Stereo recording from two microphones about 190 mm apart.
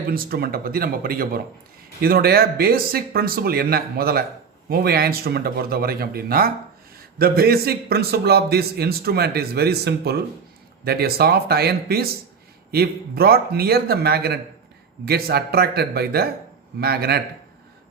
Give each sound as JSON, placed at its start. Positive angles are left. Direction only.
{"t": 0.1, "sound": "a man's voice", "side_deg": -50}